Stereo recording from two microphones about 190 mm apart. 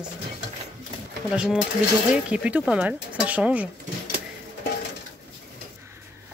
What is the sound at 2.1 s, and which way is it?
Speech, 5° right (ahead or behind).